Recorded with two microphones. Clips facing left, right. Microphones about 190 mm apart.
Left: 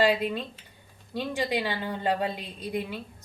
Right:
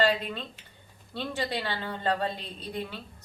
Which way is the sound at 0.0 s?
10° left (ahead or behind).